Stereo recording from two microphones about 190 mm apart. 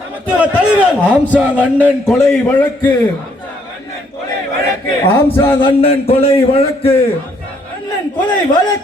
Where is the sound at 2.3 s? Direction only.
5° left (ahead or behind).